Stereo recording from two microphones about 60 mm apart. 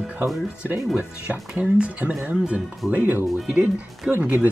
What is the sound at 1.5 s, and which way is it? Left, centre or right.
Speech, centre.